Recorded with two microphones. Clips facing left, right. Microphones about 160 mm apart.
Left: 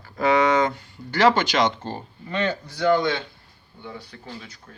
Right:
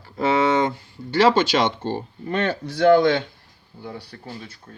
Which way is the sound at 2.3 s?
55° right (ahead or behind).